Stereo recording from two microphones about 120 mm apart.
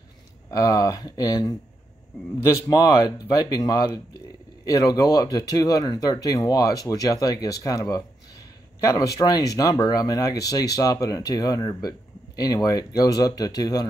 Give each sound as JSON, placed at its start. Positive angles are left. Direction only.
{"t": 0.5, "sound": "speech", "side_deg": 30}